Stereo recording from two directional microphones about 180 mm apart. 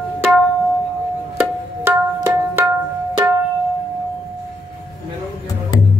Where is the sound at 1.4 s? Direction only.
10° right (ahead or behind).